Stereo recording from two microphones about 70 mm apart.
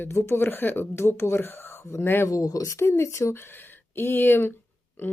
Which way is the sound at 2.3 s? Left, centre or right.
Left.